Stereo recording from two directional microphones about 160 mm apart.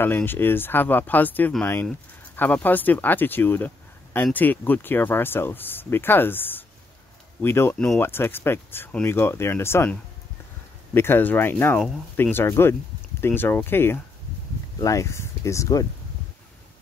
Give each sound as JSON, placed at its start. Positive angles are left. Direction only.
{"t": 0.0, "sound": "speech", "side_deg": 15}